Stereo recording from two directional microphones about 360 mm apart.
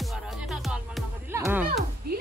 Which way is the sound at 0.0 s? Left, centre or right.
Centre.